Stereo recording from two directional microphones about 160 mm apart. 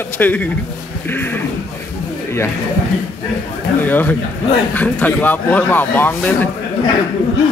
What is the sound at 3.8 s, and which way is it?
A man's voice, 10° left (ahead or behind).